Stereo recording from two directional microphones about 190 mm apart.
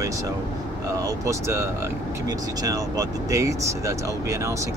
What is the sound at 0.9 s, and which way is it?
Speech, 15° right (ahead or behind).